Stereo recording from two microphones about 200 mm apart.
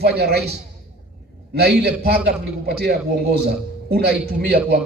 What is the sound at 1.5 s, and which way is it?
Speech, 55° right (ahead or behind).